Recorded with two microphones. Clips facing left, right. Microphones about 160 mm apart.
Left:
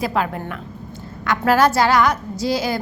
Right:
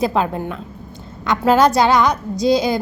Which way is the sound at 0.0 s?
25° right (ahead or behind).